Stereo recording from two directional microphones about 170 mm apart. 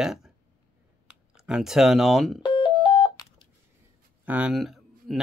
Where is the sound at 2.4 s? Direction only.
30° left (ahead or behind).